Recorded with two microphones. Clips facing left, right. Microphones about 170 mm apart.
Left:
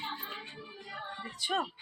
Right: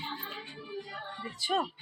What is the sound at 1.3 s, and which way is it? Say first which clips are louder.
Speech: right 3 dB; 5° right (ahead or behind).